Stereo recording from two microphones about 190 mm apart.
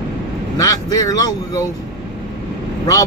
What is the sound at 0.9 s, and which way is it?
Speech, 20° left (ahead or behind).